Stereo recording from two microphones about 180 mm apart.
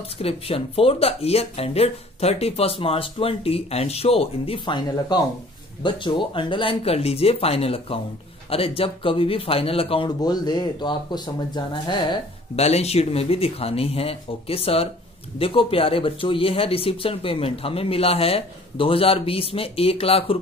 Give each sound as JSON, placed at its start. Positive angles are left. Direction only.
{"t": 0.2, "sound": "speech", "side_deg": 35}